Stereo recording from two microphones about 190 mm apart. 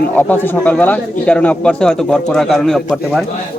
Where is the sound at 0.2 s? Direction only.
10° left (ahead or behind).